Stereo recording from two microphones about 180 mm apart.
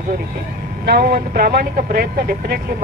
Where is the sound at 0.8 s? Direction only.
60° right (ahead or behind).